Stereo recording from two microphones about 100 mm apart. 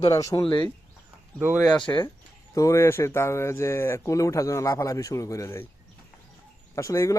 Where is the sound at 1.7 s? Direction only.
10° left (ahead or behind).